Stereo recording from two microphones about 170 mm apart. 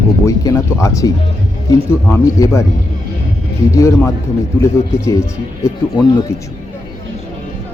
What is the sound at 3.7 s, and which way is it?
Speech, 15° left (ahead or behind).